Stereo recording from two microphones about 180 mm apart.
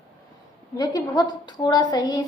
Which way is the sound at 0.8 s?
20° left (ahead or behind).